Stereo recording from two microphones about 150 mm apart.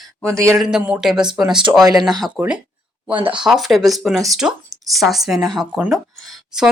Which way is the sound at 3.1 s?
35° right (ahead or behind).